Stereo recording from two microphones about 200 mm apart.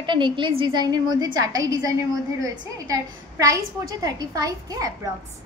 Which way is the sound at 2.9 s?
15° right (ahead or behind).